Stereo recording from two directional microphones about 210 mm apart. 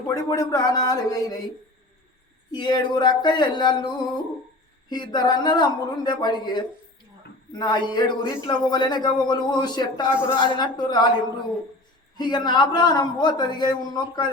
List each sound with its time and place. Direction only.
0.1 s a man's voice: 20° left (ahead or behind)
2.5 s a man's voice: 20° left (ahead or behind)